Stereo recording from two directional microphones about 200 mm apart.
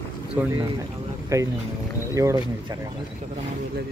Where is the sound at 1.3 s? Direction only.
15° right (ahead or behind).